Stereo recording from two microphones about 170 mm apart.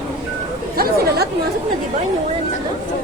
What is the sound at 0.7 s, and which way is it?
Chatter, 60° right (ahead or behind).